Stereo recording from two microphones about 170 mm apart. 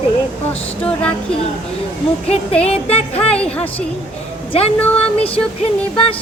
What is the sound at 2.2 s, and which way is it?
Speech, 35° left (ahead or behind).